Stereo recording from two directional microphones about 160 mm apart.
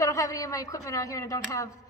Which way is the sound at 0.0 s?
20° left (ahead or behind).